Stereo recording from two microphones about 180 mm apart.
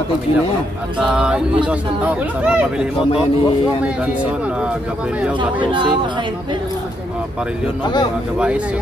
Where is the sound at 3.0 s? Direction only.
30° left (ahead or behind).